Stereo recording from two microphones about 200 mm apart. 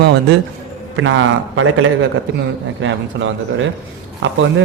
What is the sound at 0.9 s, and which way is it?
A man's voice, 75° right (ahead or behind).